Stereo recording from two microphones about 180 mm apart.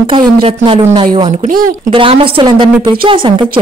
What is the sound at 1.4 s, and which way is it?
Speech, 50° right (ahead or behind).